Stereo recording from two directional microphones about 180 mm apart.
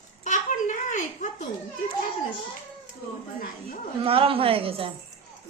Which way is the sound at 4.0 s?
30° right (ahead or behind).